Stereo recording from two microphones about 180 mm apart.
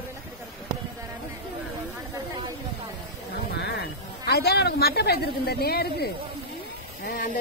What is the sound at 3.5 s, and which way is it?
A woman's voice, 65° left (ahead or behind).